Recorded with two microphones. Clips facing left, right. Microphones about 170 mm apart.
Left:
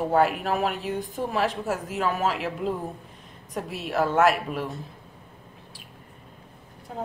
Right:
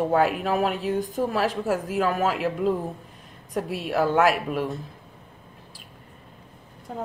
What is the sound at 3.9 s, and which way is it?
Speech, 45° right (ahead or behind).